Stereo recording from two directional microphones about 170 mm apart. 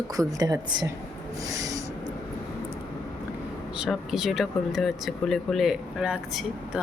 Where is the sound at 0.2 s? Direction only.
20° right (ahead or behind).